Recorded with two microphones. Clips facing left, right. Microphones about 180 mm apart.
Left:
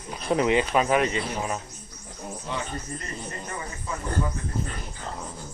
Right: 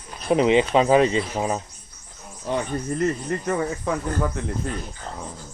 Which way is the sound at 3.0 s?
75° right (ahead or behind).